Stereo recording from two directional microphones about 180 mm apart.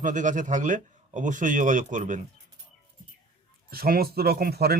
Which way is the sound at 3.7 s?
55° right (ahead or behind).